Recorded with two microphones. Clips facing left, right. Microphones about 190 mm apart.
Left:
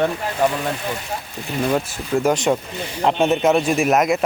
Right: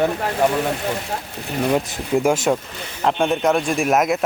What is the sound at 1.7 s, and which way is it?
A man's voice, 10° right (ahead or behind).